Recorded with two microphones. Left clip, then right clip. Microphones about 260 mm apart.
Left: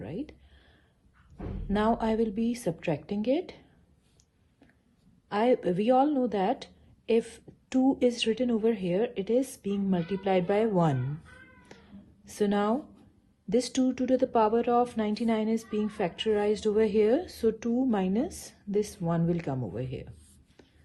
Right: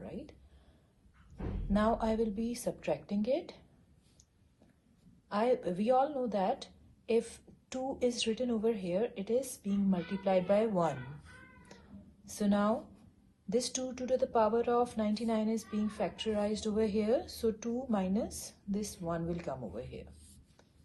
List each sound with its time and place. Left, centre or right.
0.0 s a sound: left
1.7 s a woman's voice: left
5.3 s a woman's voice: left
11.7 s cat: left
12.2 s a woman's voice: left